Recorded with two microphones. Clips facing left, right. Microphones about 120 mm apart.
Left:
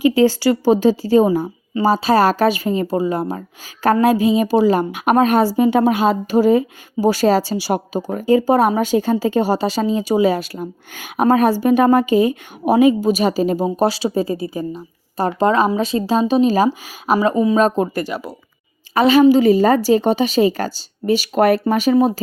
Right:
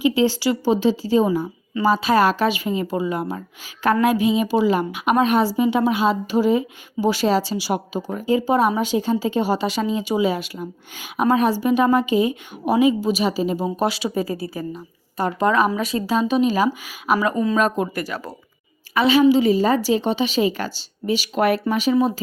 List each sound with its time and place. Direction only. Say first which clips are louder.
0.0 s speech: left 5 dB; 45° left (ahead or behind)
1.7 s speech: left 3 dB; 35° left (ahead or behind)
13.7 s speech: left 5 dB; 35° left (ahead or behind)
18.9 s speech: left 4 dB; 40° left (ahead or behind)